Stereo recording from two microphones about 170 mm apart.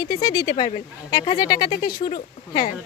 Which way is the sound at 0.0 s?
25° left (ahead or behind).